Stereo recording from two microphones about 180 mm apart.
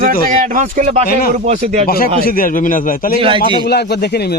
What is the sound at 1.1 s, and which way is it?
Speech, 55° left (ahead or behind).